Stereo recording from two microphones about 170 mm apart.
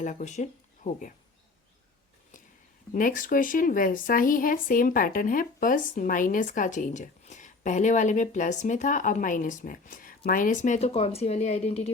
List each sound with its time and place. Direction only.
0.0 s speech: 45° left (ahead or behind)
2.9 s speech: 55° left (ahead or behind)